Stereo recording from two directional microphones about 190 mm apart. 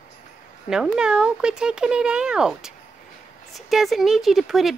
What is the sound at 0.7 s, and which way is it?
Speech, 5° right (ahead or behind).